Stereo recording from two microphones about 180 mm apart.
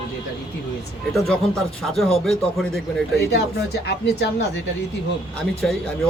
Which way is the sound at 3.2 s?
65° left (ahead or behind).